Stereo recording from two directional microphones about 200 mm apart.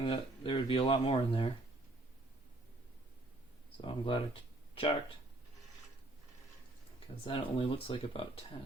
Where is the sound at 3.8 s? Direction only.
25° left (ahead or behind).